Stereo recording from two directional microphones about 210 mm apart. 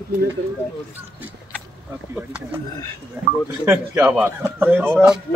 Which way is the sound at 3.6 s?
10° right (ahead or behind).